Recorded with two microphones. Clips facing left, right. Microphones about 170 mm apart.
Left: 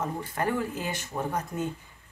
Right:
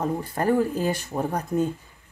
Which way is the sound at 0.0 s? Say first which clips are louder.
Right 5 dB; 35° right (ahead or behind).